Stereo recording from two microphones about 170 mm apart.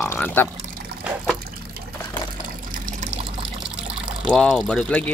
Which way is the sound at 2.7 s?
45° right (ahead or behind).